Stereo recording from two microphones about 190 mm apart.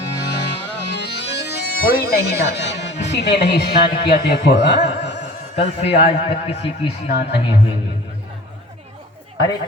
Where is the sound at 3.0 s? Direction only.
65° left (ahead or behind).